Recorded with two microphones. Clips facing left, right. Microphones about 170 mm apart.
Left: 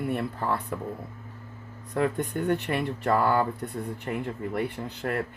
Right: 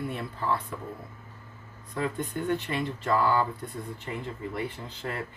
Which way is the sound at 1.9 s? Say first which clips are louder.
Left 4 dB; 65° left (ahead or behind).